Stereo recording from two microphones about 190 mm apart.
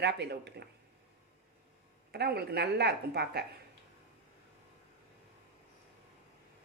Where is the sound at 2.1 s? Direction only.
55° right (ahead or behind).